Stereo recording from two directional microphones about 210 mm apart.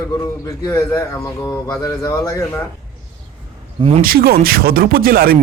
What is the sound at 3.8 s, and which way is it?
Speech, 25° right (ahead or behind).